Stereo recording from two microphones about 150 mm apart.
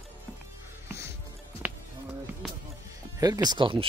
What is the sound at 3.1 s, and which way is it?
Speech, 25° right (ahead or behind).